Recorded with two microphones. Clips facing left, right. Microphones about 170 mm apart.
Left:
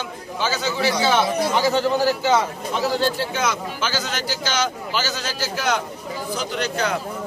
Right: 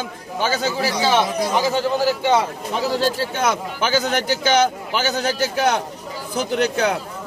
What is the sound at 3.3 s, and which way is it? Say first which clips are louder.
Speech: right 3 dB; 60° right (ahead or behind).